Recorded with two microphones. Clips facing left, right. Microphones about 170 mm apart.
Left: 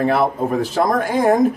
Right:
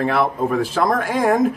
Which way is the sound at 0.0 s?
40° left (ahead or behind).